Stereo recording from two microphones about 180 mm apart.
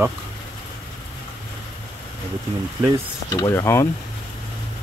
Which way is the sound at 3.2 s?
15° left (ahead or behind).